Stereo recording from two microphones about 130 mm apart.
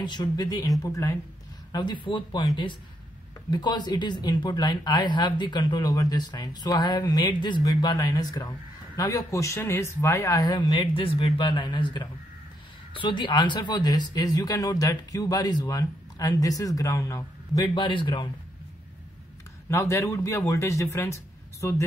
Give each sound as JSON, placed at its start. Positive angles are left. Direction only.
{"t": 0.0, "sound": "speech", "side_deg": 35}
{"t": 17.7, "sound": "speech", "side_deg": 40}
{"t": 19.7, "sound": "speech", "side_deg": 20}